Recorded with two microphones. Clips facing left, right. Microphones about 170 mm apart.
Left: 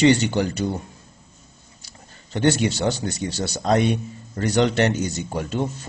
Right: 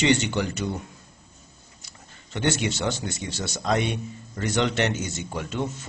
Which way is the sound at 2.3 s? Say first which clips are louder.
Left 6 dB; 35° left (ahead or behind).